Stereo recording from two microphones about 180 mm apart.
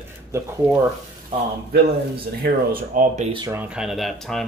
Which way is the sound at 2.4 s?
50° right (ahead or behind).